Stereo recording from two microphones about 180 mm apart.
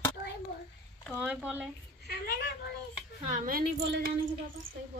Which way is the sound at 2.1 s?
60° left (ahead or behind).